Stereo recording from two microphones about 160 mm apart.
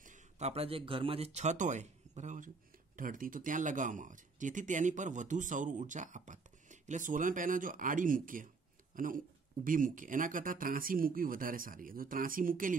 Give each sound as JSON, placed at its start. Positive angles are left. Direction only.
{"t": 0.0, "sound": "speech", "side_deg": -50}